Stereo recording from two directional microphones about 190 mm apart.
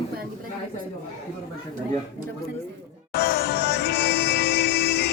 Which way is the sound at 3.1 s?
65° left (ahead or behind).